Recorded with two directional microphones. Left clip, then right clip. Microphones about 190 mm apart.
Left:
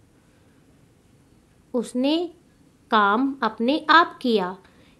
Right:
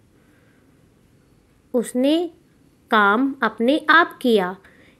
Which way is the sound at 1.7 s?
10° right (ahead or behind).